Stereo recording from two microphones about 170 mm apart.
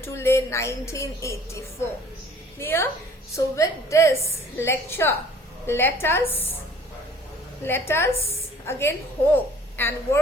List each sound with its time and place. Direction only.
0.0 s a woman's voice: 15° left (ahead or behind)
7.6 s a woman's voice: 15° left (ahead or behind)